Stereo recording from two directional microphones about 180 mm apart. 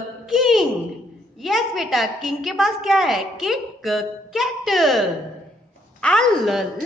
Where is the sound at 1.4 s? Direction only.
Centre (ahead or behind).